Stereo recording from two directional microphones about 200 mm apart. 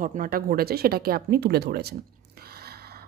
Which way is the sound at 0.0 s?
45° right (ahead or behind).